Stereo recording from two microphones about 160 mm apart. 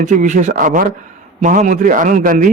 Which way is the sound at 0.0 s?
50° right (ahead or behind).